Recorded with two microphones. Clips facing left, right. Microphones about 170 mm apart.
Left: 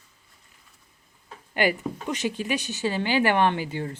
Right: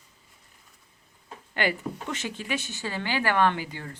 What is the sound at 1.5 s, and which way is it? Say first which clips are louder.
Speech: left 4 dB; 15° left (ahead or behind).